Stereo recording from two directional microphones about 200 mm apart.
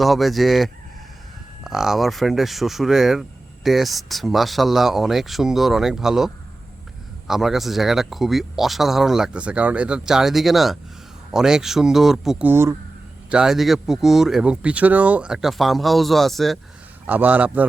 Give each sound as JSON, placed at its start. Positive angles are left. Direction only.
{"t": 0.0, "sound": "a man's voice", "side_deg": 0}